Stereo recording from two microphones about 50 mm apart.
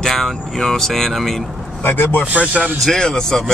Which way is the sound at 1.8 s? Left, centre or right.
Left.